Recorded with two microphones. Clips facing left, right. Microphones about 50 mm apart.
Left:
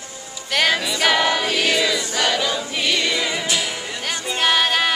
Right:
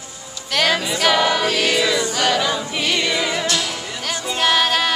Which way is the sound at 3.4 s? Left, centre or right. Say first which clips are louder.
Right 1 dB; centre.